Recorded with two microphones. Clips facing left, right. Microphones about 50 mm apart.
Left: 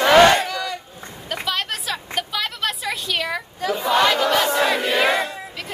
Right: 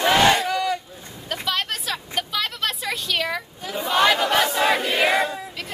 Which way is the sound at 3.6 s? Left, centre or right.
Left.